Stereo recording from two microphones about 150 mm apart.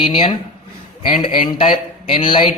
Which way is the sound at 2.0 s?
35° left (ahead or behind).